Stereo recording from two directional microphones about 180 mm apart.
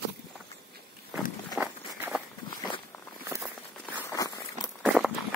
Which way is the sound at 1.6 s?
5° right (ahead or behind).